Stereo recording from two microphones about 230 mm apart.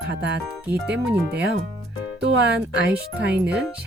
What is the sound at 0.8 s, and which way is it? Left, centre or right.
Speech, centre.